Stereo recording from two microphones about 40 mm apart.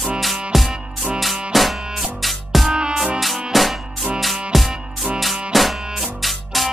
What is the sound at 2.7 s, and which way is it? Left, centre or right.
Music, right.